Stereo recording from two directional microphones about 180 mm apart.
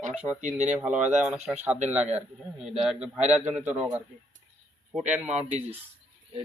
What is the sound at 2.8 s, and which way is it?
Speech, 5° right (ahead or behind).